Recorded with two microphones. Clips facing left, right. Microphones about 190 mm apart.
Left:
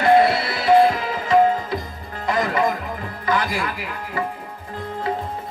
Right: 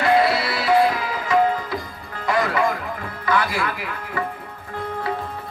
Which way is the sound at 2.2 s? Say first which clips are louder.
Even; 40° left (ahead or behind).